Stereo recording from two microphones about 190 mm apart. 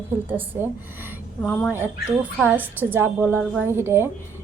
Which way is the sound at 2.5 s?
10° right (ahead or behind).